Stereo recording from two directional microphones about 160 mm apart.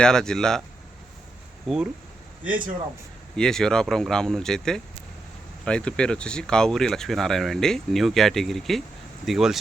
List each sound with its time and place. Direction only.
0.0 s speech: 5° left (ahead or behind)
1.6 s speech: centre (ahead or behind)
3.3 s speech: 5° left (ahead or behind)